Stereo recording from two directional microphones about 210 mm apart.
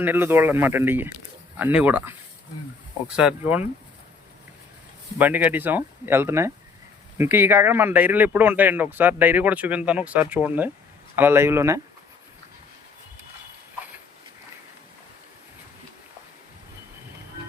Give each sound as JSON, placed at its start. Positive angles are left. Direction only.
{"t": 0.0, "sound": "speech", "side_deg": -10}
{"t": 5.1, "sound": "speech", "side_deg": -5}